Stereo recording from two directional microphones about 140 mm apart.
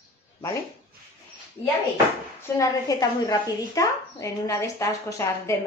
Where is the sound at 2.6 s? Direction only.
25° left (ahead or behind).